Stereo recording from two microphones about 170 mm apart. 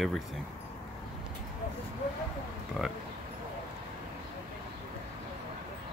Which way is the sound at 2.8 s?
5° right (ahead or behind).